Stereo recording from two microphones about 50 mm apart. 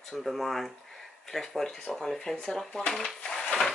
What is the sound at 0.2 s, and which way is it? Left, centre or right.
Speech, centre.